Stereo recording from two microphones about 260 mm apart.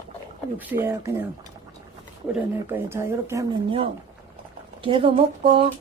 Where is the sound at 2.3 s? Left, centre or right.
Centre.